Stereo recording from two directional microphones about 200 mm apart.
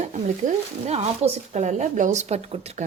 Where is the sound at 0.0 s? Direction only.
35° right (ahead or behind).